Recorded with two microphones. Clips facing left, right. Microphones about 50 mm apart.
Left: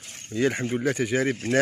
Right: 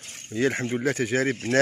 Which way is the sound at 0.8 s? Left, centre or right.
Right.